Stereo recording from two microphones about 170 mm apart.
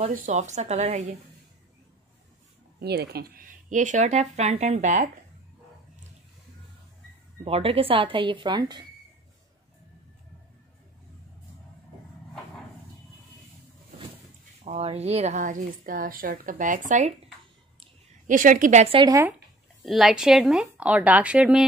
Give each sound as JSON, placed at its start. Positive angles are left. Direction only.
{"t": 0.0, "sound": "speech", "side_deg": -45}
{"t": 2.8, "sound": "speech", "side_deg": -70}
{"t": 7.4, "sound": "speech", "side_deg": -35}
{"t": 14.6, "sound": "speech", "side_deg": -35}
{"t": 18.2, "sound": "speech", "side_deg": -50}
{"t": 18.9, "sound": "speech", "side_deg": -20}
{"t": 19.8, "sound": "a woman's voice", "side_deg": 0}